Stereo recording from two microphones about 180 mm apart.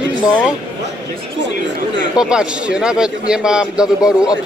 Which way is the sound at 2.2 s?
5° right (ahead or behind).